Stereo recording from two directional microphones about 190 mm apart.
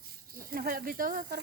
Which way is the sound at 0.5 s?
50° right (ahead or behind).